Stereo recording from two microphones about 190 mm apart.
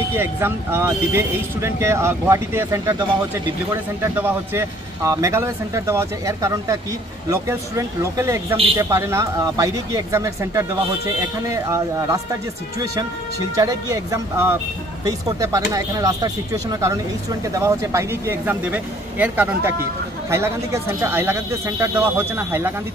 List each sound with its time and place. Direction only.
0.1 s speech: 10° right (ahead or behind)
13.6 s speech: 15° right (ahead or behind)
17.6 s speech: 15° right (ahead or behind)